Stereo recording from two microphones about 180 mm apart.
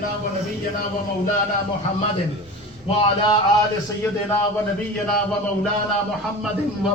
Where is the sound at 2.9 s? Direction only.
30° left (ahead or behind).